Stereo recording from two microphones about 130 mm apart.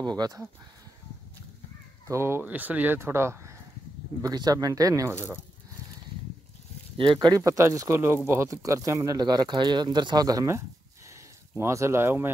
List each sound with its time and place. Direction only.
0.0 s speech: 30° right (ahead or behind)
2.0 s speech: 20° right (ahead or behind)
7.0 s speech: 40° right (ahead or behind)
11.1 s a sound: 20° right (ahead or behind)